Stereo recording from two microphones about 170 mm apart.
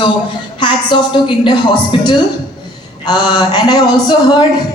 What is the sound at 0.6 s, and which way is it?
A woman's voice, 30° left (ahead or behind).